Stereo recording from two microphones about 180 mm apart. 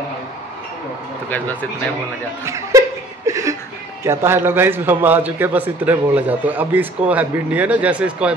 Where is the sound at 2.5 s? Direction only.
15° right (ahead or behind).